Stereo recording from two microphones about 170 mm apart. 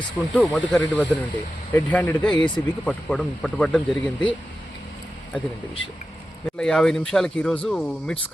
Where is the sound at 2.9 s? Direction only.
5° left (ahead or behind).